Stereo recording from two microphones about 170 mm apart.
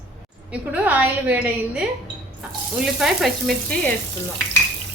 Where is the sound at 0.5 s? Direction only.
10° right (ahead or behind).